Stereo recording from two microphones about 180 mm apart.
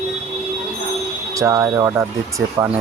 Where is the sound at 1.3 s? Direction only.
15° right (ahead or behind).